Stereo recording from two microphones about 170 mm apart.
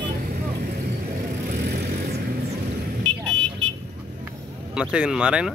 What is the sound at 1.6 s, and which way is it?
Vehicle, 70° right (ahead or behind).